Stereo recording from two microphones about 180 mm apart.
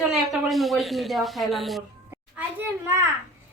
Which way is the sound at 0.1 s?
Centre (ahead or behind).